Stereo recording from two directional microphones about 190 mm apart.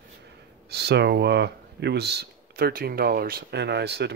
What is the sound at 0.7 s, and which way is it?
Speech, 60° right (ahead or behind).